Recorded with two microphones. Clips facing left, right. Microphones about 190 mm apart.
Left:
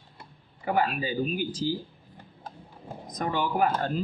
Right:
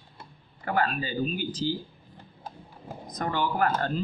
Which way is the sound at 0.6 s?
10° left (ahead or behind).